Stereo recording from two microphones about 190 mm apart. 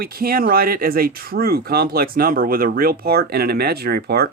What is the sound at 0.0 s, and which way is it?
Speech, 50° right (ahead or behind).